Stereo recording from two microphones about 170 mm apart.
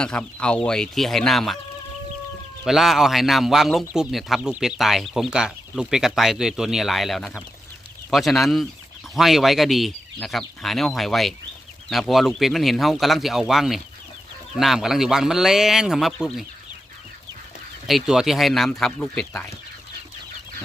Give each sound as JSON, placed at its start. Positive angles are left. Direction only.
{"t": 0.0, "sound": "a man's voice", "side_deg": 5}
{"t": 2.6, "sound": "a man's voice", "side_deg": 0}
{"t": 17.8, "sound": "a man's voice", "side_deg": 0}